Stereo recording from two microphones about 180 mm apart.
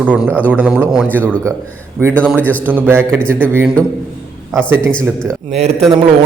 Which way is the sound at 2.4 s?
10° left (ahead or behind).